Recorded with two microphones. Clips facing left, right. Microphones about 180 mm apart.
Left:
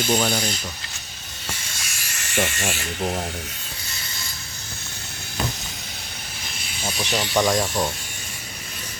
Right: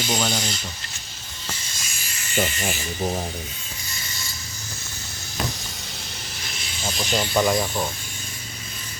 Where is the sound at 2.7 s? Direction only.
70° left (ahead or behind).